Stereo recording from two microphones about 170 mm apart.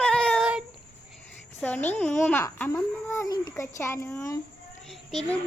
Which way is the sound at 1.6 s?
10° left (ahead or behind).